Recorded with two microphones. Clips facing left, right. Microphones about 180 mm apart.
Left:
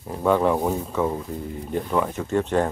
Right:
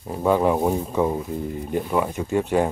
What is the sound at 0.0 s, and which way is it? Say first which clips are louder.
Speech: right 1 dB; 10° right (ahead or behind).